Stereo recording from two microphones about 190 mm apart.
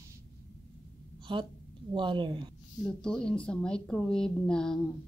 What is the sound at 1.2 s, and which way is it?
A woman's voice, 25° right (ahead or behind).